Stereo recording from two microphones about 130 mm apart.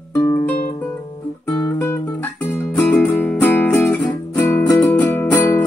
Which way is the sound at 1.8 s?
15° left (ahead or behind).